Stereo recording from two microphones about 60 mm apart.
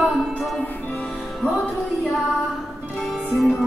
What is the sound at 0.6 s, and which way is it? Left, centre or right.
Music, left.